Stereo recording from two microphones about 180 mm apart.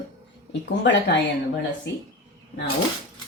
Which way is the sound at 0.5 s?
75° left (ahead or behind).